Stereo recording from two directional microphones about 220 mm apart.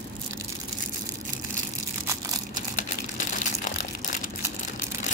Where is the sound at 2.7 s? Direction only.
35° left (ahead or behind).